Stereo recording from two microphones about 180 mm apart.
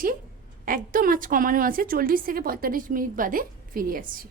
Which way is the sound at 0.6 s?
50° right (ahead or behind).